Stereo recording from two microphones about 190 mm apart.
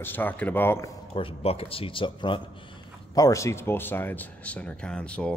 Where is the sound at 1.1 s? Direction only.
30° left (ahead or behind).